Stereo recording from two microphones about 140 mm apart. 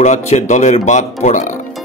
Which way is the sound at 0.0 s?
60° left (ahead or behind).